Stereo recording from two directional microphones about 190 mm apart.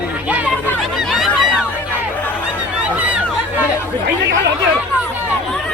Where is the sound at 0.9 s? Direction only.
Centre (ahead or behind).